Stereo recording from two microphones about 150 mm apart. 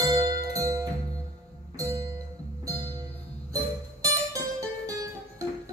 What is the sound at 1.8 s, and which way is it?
Music, 20° right (ahead or behind).